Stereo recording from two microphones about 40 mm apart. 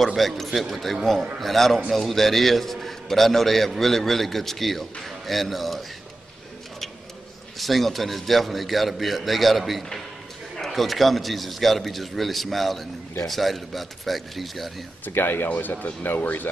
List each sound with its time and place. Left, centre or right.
0.0 s a man's voice: centre
7.5 s a man's voice: centre
15.0 s speech: left
16.2 s speech: left